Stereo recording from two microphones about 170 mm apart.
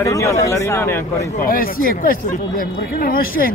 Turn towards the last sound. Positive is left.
turn(degrees=55)  # may be behind; listen again after turning